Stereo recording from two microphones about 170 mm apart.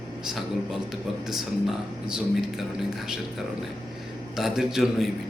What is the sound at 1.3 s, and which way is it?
Speech, 5° right (ahead or behind).